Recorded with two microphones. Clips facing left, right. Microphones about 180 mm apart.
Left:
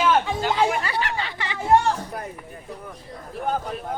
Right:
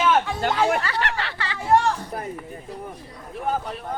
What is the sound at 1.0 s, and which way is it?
Speech, 70° right (ahead or behind).